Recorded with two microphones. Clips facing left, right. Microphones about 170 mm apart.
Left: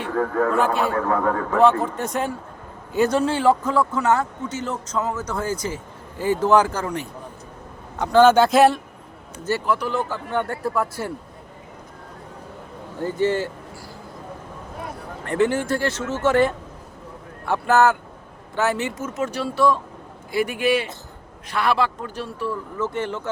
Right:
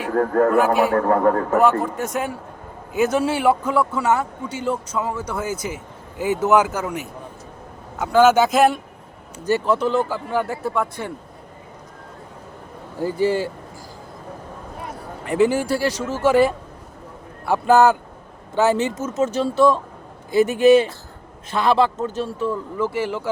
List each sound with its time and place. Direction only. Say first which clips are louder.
0.1 s a man's voice: right 4 dB; 45° right (ahead or behind)
0.5 s a man's voice: right 4 dB; 10° right (ahead or behind)
1.0 s a man's voice: right 4 dB; 45° right (ahead or behind)
1.8 s a man's voice: even; centre (ahead or behind)
9.6 s speech: right 4 dB; 25° right (ahead or behind)
10.1 s speech: right 2 dB; 5° right (ahead or behind)
13.0 s a man's voice: right 2 dB; 10° right (ahead or behind)
15.2 s a man's voice: right 3 dB; 10° right (ahead or behind)
22.8 s a man's voice: right 2 dB; 10° right (ahead or behind)